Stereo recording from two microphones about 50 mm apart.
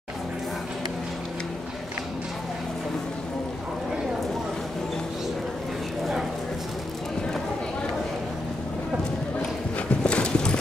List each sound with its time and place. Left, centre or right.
10.0 s clip-clop: centre